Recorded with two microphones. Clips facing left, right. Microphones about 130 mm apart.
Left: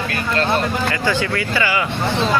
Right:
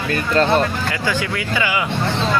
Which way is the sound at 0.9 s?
10° right (ahead or behind).